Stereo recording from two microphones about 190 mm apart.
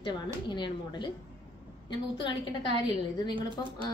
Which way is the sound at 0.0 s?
25° left (ahead or behind).